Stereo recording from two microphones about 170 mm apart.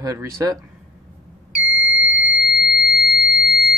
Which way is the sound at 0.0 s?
20° right (ahead or behind).